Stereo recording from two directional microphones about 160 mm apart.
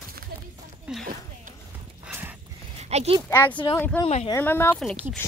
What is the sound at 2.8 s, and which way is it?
Speech, 40° right (ahead or behind).